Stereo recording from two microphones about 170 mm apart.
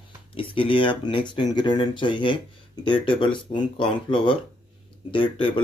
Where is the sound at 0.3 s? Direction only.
30° left (ahead or behind).